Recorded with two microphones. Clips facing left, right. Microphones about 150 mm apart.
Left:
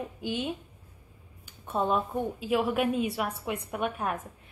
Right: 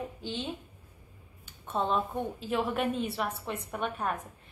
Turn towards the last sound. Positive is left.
turn(degrees=5)  # may be behind; listen again after turning